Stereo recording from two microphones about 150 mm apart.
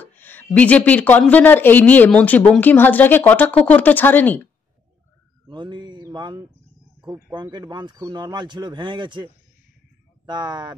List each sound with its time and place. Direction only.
0.0 s a woman's voice: 10° left (ahead or behind)
5.5 s mantra: 30° right (ahead or behind)
7.3 s a man's voice: 30° right (ahead or behind)